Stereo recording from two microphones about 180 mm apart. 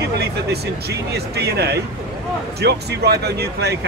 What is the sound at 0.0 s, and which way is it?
Speech, 65° right (ahead or behind).